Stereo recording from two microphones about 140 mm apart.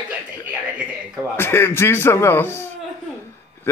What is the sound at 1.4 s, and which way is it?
Speech, 15° left (ahead or behind).